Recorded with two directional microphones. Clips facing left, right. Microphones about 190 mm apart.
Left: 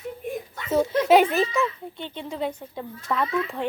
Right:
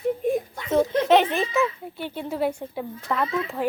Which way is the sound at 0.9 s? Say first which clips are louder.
Left 4 dB; 5° left (ahead or behind).